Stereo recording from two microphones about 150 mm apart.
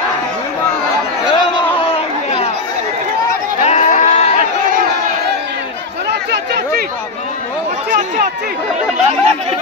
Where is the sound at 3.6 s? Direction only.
50° left (ahead or behind).